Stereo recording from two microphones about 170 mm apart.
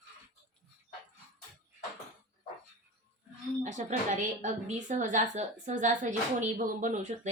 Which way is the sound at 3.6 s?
45° right (ahead or behind).